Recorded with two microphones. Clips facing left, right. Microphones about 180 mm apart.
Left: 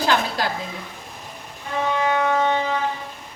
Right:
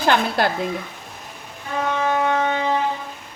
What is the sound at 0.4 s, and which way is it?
Speech, 60° right (ahead or behind).